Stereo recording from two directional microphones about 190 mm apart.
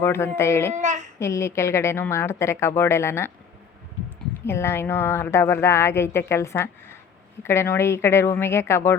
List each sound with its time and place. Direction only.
0.0 s a woman's voice: 15° left (ahead or behind)
0.7 s a child's voice: 40° right (ahead or behind)
1.2 s a woman's voice: 15° left (ahead or behind)
4.4 s a woman's voice: 15° left (ahead or behind)